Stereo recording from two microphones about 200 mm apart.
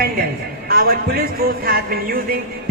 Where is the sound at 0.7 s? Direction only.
50° right (ahead or behind).